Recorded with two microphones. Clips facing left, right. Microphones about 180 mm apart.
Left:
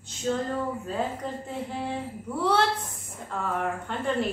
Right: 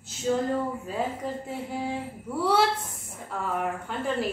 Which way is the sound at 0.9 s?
10° right (ahead or behind).